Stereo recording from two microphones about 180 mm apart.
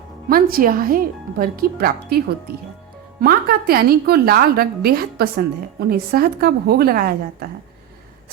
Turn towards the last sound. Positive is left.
turn(degrees=-55)  # may be behind; listen again after turning